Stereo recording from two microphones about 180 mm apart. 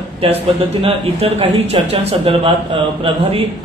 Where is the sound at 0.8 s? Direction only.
35° right (ahead or behind).